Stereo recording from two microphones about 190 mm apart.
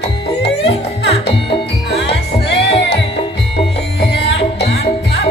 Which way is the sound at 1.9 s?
65° left (ahead or behind).